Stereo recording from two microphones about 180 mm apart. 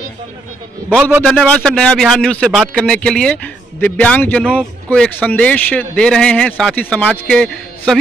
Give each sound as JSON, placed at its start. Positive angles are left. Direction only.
{"t": 1.2, "sound": "speech", "side_deg": 5}